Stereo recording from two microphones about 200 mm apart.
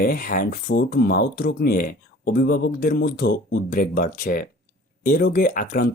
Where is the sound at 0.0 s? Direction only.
45° left (ahead or behind).